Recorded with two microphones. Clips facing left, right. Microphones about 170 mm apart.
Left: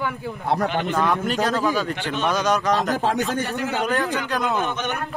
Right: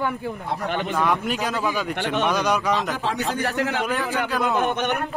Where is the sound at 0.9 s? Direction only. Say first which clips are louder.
Even; 10° right (ahead or behind).